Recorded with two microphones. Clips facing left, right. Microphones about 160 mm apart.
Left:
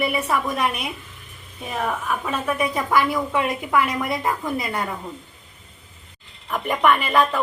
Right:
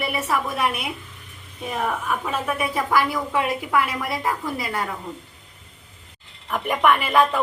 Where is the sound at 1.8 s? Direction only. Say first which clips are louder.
Even; 10° right (ahead or behind).